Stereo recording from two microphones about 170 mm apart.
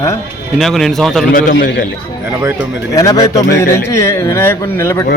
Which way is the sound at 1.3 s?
55° left (ahead or behind).